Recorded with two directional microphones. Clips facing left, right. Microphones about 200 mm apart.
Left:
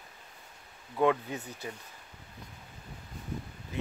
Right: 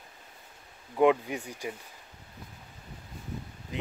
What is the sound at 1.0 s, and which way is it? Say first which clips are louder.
Speech: right 4 dB; 15° right (ahead or behind).